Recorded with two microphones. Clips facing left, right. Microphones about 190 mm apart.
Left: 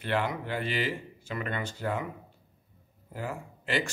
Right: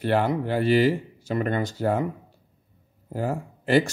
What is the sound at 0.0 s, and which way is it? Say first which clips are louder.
Speech: right 7 dB; 40° right (ahead or behind).